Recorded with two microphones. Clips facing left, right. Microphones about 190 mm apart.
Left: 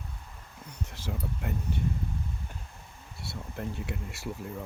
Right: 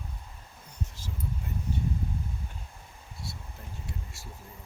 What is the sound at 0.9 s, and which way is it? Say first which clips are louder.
Speech: left 4 dB; 70° left (ahead or behind).